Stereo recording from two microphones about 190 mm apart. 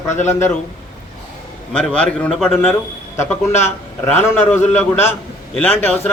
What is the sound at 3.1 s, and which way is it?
A man's voice, 15° left (ahead or behind).